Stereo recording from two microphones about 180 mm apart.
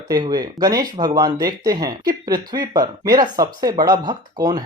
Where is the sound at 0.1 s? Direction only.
20° right (ahead or behind).